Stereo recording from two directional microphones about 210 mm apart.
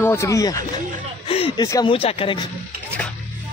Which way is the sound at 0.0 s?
10° left (ahead or behind).